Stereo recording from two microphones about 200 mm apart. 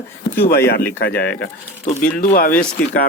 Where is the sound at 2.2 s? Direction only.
40° left (ahead or behind).